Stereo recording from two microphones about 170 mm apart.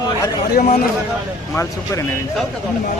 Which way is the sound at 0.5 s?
45° left (ahead or behind).